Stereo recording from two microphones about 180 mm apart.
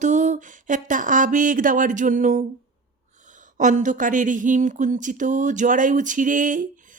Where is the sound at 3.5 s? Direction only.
45° right (ahead or behind).